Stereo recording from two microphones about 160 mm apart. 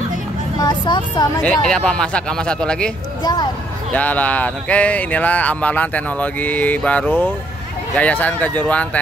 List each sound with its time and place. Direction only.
0.6 s speech: 30° left (ahead or behind)
1.4 s speech: 5° left (ahead or behind)
3.9 s speech: 10° left (ahead or behind)